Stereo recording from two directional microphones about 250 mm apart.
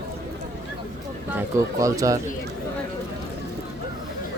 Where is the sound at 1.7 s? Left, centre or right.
Centre.